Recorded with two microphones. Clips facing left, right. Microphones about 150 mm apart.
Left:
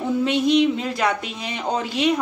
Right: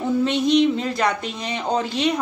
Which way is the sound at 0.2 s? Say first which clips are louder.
Even; 5° left (ahead or behind).